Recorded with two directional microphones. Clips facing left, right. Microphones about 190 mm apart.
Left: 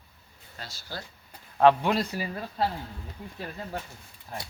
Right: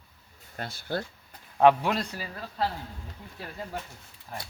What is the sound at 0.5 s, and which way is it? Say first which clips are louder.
Speech: right 8 dB; 55° right (ahead or behind).